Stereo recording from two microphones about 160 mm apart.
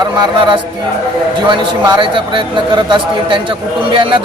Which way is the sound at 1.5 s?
30° right (ahead or behind).